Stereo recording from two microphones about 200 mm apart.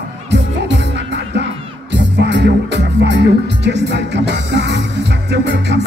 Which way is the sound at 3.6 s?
60° right (ahead or behind).